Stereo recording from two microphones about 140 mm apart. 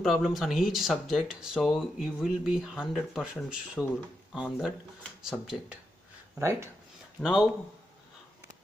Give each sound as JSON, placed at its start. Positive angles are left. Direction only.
{"t": 0.0, "sound": "speech", "side_deg": 0}
{"t": 6.3, "sound": "speech", "side_deg": -20}
{"t": 7.2, "sound": "speech", "side_deg": -5}